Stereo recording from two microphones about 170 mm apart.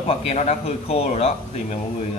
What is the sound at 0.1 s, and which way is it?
Speech, 40° left (ahead or behind).